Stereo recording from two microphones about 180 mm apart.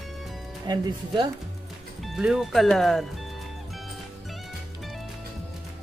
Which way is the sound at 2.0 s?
5° right (ahead or behind).